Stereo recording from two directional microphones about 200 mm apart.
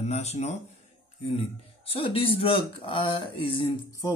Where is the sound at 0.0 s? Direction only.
35° left (ahead or behind).